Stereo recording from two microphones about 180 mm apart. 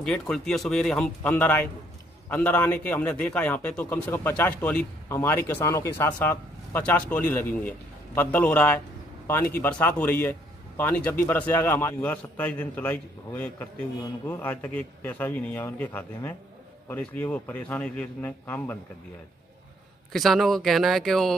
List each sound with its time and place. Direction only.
0.0 s a man's voice: 5° left (ahead or behind)
20.1 s a man's voice: centre (ahead or behind)